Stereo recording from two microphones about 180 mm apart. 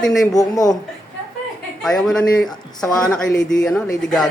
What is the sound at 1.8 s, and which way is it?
Speech, centre (ahead or behind).